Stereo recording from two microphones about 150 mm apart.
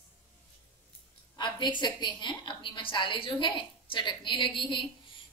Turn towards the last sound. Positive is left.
turn(degrees=35)  # may be behind; listen again after turning